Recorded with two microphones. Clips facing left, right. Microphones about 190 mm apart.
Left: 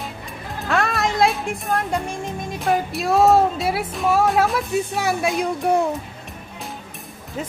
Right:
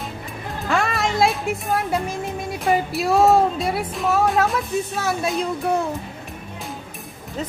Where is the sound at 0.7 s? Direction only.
Centre (ahead or behind).